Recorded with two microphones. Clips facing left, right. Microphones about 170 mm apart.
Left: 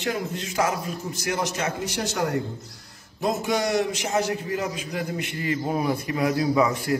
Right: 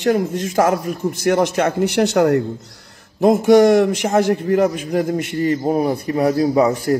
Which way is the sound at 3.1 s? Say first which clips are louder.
Right 13 dB; 50° right (ahead or behind).